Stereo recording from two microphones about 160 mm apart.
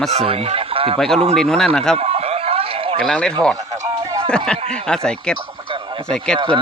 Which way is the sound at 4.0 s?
30° right (ahead or behind).